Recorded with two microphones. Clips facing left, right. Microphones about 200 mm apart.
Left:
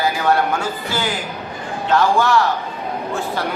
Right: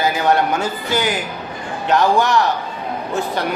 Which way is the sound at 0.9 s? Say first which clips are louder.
Right 6 dB; 20° right (ahead or behind).